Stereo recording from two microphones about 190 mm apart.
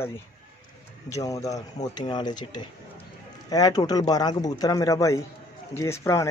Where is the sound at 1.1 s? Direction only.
15° left (ahead or behind).